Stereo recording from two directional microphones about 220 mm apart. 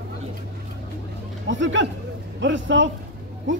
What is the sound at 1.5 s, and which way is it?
Speech, 55° right (ahead or behind).